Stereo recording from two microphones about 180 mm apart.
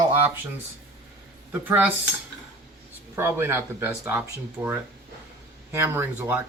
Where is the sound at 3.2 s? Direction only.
15° right (ahead or behind).